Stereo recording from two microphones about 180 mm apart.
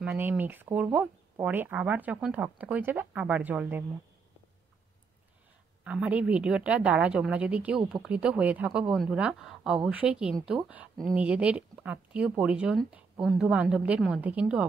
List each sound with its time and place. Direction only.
0.0 s speech: 10° right (ahead or behind)
5.9 s speech: 10° right (ahead or behind)